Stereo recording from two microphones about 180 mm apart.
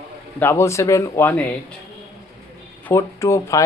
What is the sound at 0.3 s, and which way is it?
A man's voice, 15° left (ahead or behind).